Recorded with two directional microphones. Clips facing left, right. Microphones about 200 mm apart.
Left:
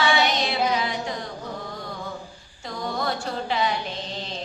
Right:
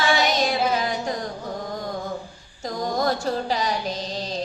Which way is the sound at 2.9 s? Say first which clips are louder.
Right 5 dB; 40° right (ahead or behind).